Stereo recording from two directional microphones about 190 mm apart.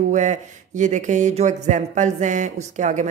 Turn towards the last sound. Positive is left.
turn(degrees=-40)  # may be behind; listen again after turning